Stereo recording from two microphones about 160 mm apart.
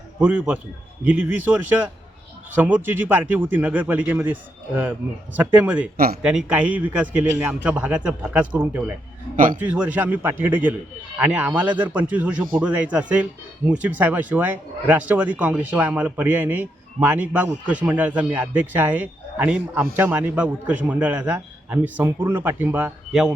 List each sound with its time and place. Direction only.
0.2 s speech: 5° right (ahead or behind)
9.3 s a man's voice: 60° right (ahead or behind)
9.6 s speech: 10° right (ahead or behind)